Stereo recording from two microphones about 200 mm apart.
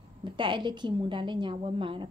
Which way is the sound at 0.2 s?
25° right (ahead or behind).